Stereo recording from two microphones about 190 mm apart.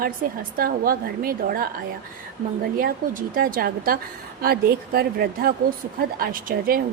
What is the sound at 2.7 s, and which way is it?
A woman's voice, 50° right (ahead or behind).